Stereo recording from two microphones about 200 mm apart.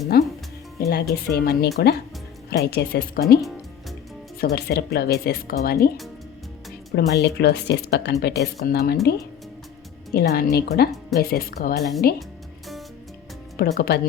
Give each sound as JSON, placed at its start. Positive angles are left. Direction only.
{"t": 0.1, "sound": "speech", "side_deg": 50}
{"t": 4.4, "sound": "speech", "side_deg": 55}
{"t": 6.9, "sound": "a woman's voice", "side_deg": 55}
{"t": 10.2, "sound": "speech", "side_deg": 50}
{"t": 11.8, "sound": "speech", "side_deg": 0}
{"t": 13.6, "sound": "speech", "side_deg": 50}